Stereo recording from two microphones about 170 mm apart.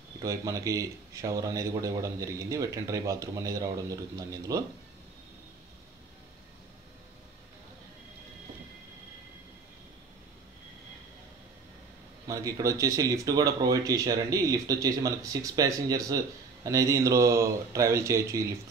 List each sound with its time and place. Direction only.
0.2 s a man's voice: 20° right (ahead or behind)
12.3 s a man's voice: 20° right (ahead or behind)